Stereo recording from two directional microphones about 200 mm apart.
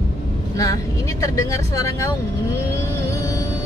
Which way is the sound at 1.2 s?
15° left (ahead or behind).